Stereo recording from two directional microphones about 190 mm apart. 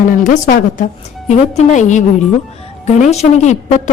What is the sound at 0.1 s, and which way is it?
Speech, 40° left (ahead or behind).